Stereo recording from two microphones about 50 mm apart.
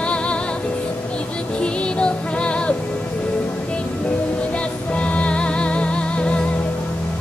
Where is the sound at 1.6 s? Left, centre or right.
Left.